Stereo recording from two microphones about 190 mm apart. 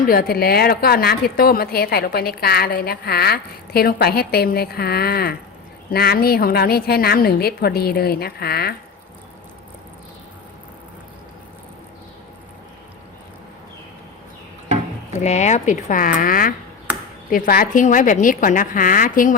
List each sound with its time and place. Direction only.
0.0 s a woman's voice: 50° left (ahead or behind)
15.2 s a woman's voice: 35° left (ahead or behind)